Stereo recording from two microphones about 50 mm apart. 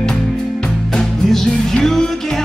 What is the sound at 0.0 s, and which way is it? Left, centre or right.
Music, centre.